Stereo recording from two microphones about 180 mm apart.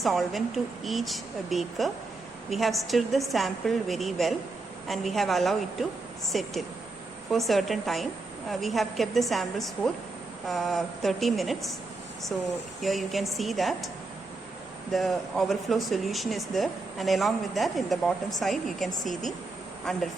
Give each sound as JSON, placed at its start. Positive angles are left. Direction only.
{"t": 0.0, "sound": "speech", "side_deg": 0}
{"t": 14.9, "sound": "speech", "side_deg": 0}